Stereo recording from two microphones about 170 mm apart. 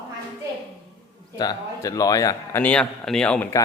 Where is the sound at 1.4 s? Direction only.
20° left (ahead or behind); by 3.5 s 5° left (ahead or behind).